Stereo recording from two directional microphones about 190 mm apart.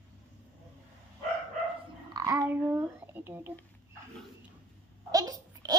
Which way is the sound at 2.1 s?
15° right (ahead or behind).